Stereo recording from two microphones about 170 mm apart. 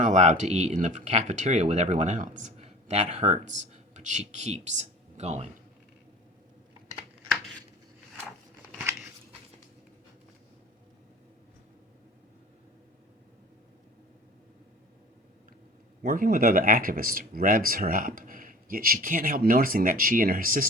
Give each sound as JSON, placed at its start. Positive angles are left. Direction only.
{"t": 0.0, "sound": "speech", "side_deg": -45}
{"t": 16.0, "sound": "speech", "side_deg": -60}